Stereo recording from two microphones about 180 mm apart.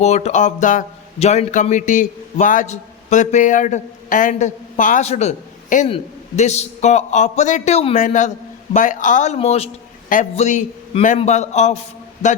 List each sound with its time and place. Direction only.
0.0 s a man's voice: 40° left (ahead or behind)